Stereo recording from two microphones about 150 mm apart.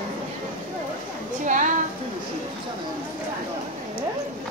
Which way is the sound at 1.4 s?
55° right (ahead or behind).